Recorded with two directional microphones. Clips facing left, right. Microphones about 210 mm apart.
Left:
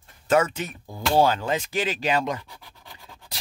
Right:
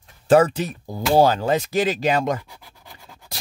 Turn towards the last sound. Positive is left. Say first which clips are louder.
# right 1 dB
turn(degrees=-10)  # may be behind; listen again after turning